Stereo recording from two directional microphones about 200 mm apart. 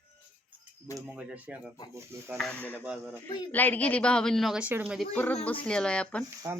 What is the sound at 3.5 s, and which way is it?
A woman's voice, 10° left (ahead or behind).